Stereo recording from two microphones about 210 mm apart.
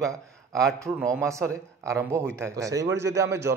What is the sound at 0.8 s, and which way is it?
A man's voice, 15° right (ahead or behind).